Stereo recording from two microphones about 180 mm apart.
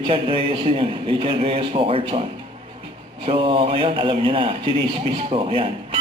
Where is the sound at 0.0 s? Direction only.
30° right (ahead or behind).